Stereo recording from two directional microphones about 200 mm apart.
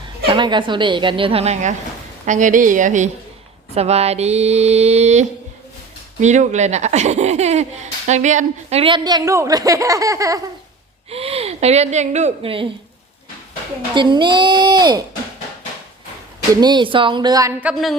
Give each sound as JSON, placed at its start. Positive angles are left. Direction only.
{"t": 0.3, "sound": "a woman's voice", "side_deg": -25}
{"t": 11.1, "sound": "speech", "side_deg": -30}
{"t": 13.9, "sound": "a woman's voice", "side_deg": -25}
{"t": 16.6, "sound": "a woman's voice", "side_deg": -20}
{"t": 17.7, "sound": "a woman's voice", "side_deg": 0}